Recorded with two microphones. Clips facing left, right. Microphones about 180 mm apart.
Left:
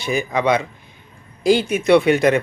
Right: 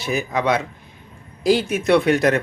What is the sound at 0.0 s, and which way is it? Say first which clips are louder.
Speech: left 2 dB; centre (ahead or behind).